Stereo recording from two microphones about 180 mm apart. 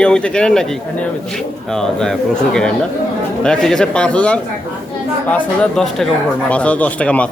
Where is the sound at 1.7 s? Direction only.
5° left (ahead or behind).